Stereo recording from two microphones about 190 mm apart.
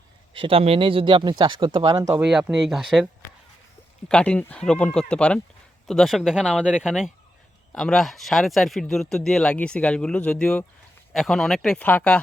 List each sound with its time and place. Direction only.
0.3 s speech: 30° right (ahead or behind)
2.2 s speech: 5° right (ahead or behind)
4.1 s speech: 5° left (ahead or behind)